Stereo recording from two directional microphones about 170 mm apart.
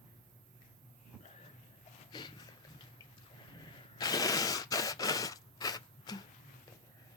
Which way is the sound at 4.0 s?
20° left (ahead or behind).